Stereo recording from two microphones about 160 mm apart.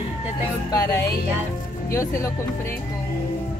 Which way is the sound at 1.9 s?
20° left (ahead or behind).